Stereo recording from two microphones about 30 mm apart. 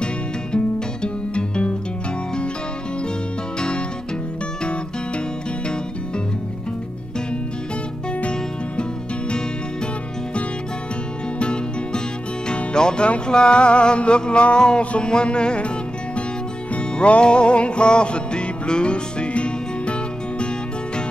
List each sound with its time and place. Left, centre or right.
0.0 s music: left
11.3 s music: left
14.8 s music: left
15.0 s music: left
16.7 s music: left
17.2 s music: left